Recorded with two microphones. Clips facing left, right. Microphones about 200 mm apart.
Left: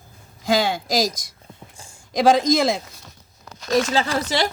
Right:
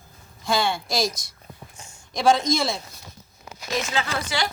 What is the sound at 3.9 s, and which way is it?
Speech, 35° left (ahead or behind).